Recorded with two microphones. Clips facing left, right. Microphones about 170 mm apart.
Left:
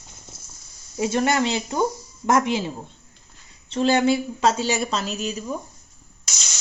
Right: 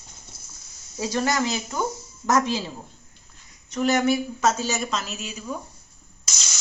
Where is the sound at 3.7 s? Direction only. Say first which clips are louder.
Left 2 dB; 30° left (ahead or behind).